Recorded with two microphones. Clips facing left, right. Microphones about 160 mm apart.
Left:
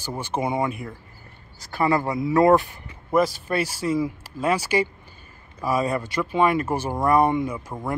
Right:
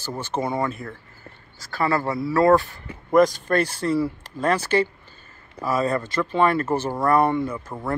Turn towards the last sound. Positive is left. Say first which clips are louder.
# even
turn(degrees=15)  # may be behind; listen again after turning